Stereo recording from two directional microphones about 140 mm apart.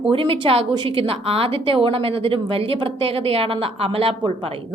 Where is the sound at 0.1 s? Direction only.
40° right (ahead or behind).